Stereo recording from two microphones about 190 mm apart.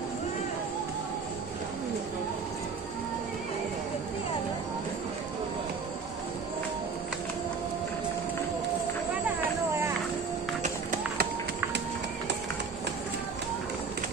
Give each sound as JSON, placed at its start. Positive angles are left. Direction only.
{"t": 10.6, "sound": "music", "side_deg": -45}